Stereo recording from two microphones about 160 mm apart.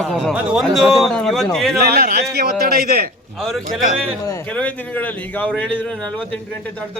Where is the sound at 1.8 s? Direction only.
85° right; by 3.1 s 70° right (ahead or behind).